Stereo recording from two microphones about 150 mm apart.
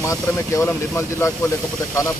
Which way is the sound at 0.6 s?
15° left (ahead or behind).